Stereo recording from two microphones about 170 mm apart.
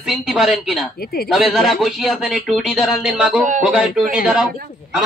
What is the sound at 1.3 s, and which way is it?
Speech, centre (ahead or behind).